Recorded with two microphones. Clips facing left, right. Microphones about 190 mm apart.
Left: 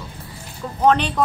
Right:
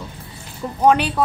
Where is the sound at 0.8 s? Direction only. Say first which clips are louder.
Right 1 dB; 10° right (ahead or behind).